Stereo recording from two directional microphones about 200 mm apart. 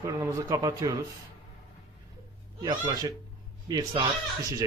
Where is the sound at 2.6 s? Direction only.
20° right (ahead or behind).